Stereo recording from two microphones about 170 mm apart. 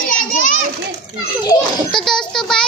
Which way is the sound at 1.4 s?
25° left (ahead or behind).